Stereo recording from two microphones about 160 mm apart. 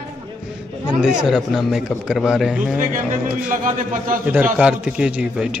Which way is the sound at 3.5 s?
55° right (ahead or behind).